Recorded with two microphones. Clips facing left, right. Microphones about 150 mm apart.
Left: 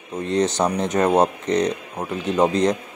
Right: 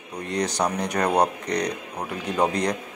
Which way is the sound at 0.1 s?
25° left (ahead or behind).